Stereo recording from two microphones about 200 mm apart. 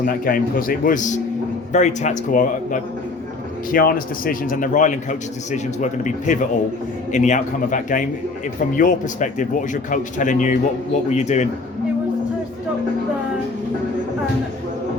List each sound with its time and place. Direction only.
0.0 s a man's voice: 45° left (ahead or behind)